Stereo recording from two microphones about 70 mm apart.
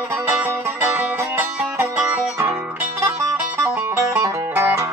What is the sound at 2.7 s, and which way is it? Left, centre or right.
Music, right.